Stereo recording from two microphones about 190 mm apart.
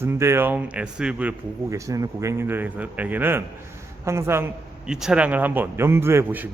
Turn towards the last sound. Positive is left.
turn(degrees=-10)  # may be behind; listen again after turning